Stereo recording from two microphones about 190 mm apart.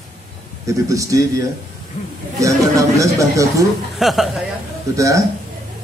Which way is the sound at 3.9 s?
Centre (ahead or behind).